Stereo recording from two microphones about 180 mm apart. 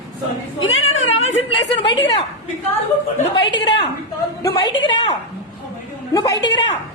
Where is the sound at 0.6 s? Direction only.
90° left.